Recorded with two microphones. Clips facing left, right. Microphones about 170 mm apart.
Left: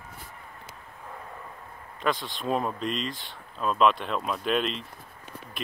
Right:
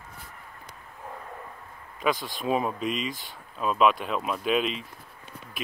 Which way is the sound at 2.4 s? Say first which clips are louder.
Right 1 dB; 5° right (ahead or behind).